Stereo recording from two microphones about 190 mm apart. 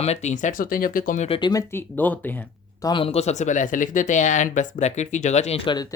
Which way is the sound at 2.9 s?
30° left (ahead or behind).